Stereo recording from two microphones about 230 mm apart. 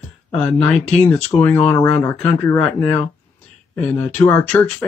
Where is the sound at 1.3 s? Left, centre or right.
Centre.